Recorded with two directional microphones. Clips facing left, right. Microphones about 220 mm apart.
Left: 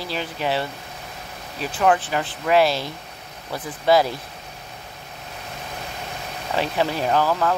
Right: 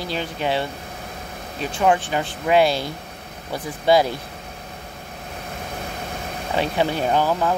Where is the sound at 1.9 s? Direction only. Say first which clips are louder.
Right 1 dB; 25° right (ahead or behind).